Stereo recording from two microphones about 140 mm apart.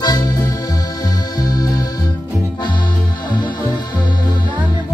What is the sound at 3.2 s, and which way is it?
Music, 30° left (ahead or behind).